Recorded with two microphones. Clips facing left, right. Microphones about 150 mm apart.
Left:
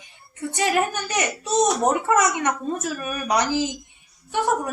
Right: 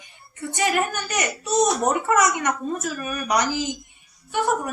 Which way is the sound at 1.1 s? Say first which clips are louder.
Even; 25° left (ahead or behind).